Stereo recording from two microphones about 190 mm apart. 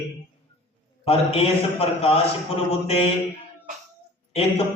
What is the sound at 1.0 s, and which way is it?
Speech, 30° left (ahead or behind).